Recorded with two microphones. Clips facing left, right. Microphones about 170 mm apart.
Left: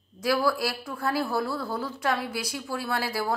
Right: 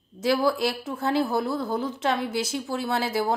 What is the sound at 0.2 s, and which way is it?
A woman's voice, 25° right (ahead or behind).